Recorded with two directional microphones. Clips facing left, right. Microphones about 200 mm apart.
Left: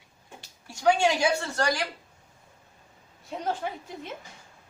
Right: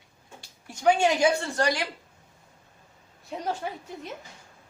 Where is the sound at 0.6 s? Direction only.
20° right (ahead or behind).